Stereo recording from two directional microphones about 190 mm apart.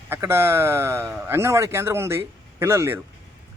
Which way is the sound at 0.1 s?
10° right (ahead or behind).